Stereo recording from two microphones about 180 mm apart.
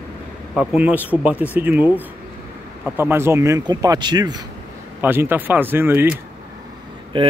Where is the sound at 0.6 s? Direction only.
10° right (ahead or behind); by 4.4 s 25° right (ahead or behind).